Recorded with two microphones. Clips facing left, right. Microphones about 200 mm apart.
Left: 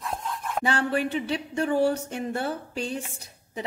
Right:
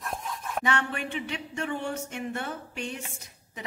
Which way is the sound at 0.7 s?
35° left (ahead or behind).